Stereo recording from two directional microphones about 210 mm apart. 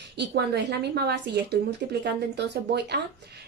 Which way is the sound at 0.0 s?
50° right (ahead or behind).